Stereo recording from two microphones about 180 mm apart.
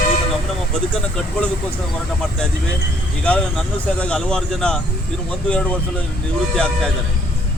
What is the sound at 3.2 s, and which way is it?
Speech, 5° left (ahead or behind).